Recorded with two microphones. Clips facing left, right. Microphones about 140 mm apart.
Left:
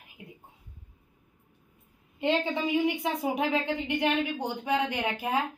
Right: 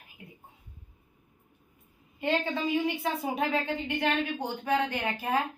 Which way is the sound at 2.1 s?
20° left (ahead or behind).